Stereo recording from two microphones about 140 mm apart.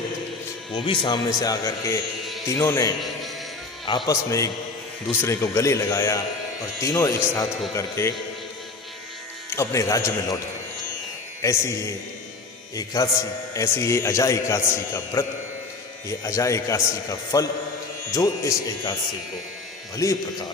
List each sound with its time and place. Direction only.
0.7 s a man's voice: 35° left (ahead or behind)
3.8 s speech: 35° left (ahead or behind)
4.1 s a man's voice: 25° left (ahead or behind)
9.5 s a man's voice: 20° left (ahead or behind)
11.4 s a man's voice: 20° left (ahead or behind)
20.0 s a man's voice: 25° left (ahead or behind)